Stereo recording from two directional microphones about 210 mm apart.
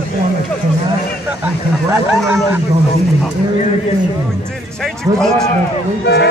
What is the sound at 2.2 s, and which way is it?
Speech, 5° right (ahead or behind).